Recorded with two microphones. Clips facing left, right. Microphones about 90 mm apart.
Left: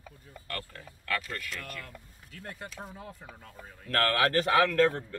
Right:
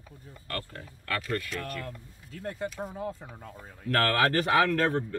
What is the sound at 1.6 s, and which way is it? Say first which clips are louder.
Speech: right 6 dB; 30° right (ahead or behind).